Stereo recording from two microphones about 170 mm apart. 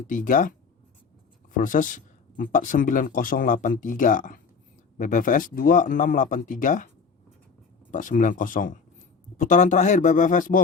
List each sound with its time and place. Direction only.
0.1 s speech: 50° left (ahead or behind)
1.5 s speech: 50° left (ahead or behind)